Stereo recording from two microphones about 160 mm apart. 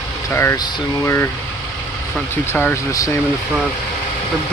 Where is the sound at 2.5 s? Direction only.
15° left (ahead or behind).